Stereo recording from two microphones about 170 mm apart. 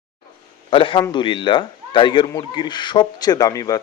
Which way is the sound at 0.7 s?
30° left (ahead or behind).